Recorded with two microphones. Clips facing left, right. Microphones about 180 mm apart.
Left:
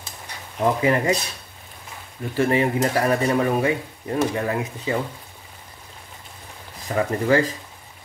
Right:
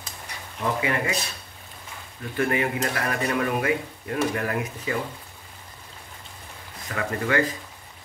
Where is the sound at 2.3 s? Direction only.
30° left (ahead or behind).